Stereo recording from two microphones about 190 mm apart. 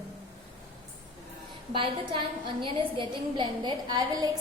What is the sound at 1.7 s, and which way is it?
A woman's voice, 25° right (ahead or behind).